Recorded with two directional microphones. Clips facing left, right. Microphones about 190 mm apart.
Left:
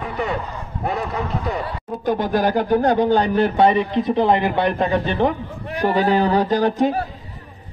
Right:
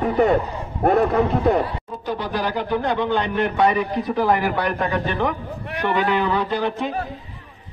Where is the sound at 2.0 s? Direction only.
45° left (ahead or behind).